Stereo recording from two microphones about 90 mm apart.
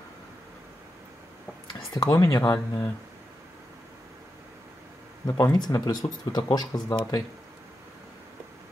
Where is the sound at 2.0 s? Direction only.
40° left (ahead or behind).